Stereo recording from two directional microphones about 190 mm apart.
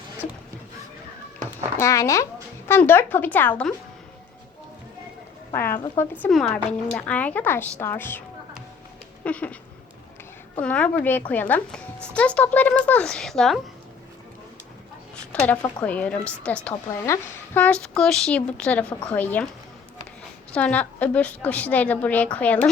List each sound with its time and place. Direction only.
1.8 s speech: 15° left (ahead or behind)
5.5 s speech: 10° left (ahead or behind)
9.2 s speech: 5° left (ahead or behind)
10.6 s speech: 5° left (ahead or behind)
15.1 s speech: 5° left (ahead or behind)
20.5 s speech: 5° left (ahead or behind)